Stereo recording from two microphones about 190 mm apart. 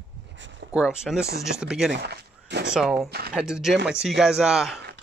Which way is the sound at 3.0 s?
55° right (ahead or behind).